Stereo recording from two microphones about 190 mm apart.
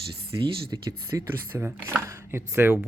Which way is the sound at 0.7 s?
20° right (ahead or behind).